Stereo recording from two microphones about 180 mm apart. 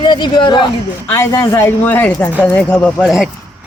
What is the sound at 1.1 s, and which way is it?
Speech, 15° left (ahead or behind).